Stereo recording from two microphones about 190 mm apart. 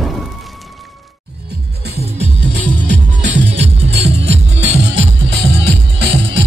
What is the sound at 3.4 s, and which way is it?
Music, 35° right (ahead or behind).